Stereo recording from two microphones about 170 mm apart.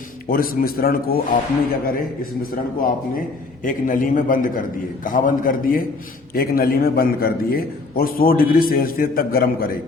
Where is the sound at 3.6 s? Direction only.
50° left (ahead or behind).